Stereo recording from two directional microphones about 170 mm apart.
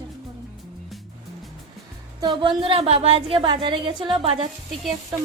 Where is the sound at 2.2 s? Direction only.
25° right (ahead or behind).